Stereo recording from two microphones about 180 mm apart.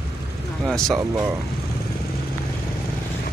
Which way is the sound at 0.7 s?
Centre (ahead or behind).